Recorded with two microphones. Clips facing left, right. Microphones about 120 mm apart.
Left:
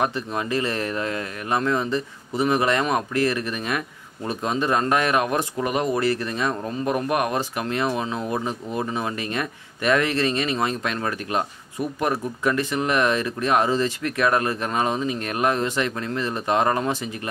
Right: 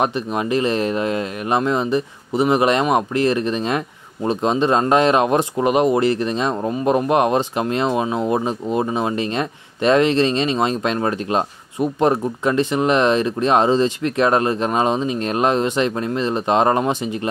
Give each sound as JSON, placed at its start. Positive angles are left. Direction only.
{"t": 0.0, "sound": "speech", "side_deg": -20}